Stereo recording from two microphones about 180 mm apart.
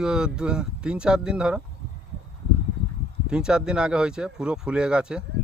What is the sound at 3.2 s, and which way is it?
Speech, 5° right (ahead or behind).